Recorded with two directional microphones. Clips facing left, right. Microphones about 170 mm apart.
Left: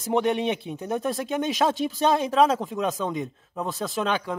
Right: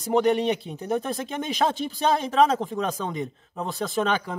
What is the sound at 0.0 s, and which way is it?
Speech, centre (ahead or behind).